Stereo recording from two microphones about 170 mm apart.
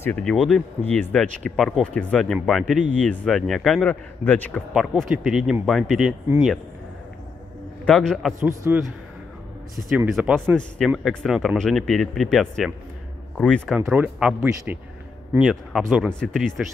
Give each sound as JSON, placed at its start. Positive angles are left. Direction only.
{"t": 0.0, "sound": "speech", "side_deg": 5}
{"t": 4.7, "sound": "speech", "side_deg": -5}
{"t": 7.8, "sound": "speech", "side_deg": 5}
{"t": 8.5, "sound": "speech", "side_deg": -15}
{"t": 9.8, "sound": "speech", "side_deg": -5}
{"t": 10.5, "sound": "speech", "side_deg": 5}
{"t": 13.7, "sound": "speech", "side_deg": -10}